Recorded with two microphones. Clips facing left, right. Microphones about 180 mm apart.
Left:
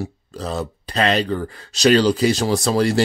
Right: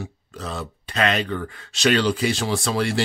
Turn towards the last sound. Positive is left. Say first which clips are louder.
# left 5 dB
turn(degrees=40)  # may be behind; listen again after turning